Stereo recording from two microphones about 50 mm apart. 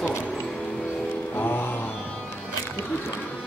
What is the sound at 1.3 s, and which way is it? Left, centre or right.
Music, left.